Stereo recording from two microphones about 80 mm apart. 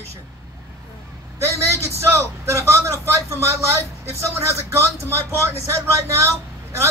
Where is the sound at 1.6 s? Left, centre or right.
Right.